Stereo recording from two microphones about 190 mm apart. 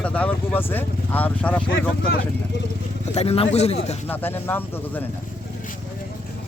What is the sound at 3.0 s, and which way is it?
Speech, 35° left (ahead or behind).